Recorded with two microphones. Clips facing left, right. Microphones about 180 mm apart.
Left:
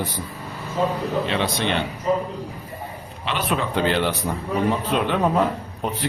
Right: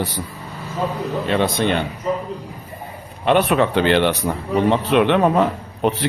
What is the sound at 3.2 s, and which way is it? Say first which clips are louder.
Speech: right 9 dB; 60° right (ahead or behind).